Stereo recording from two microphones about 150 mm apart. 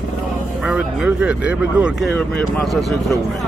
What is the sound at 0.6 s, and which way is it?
Speech, 5° right (ahead or behind).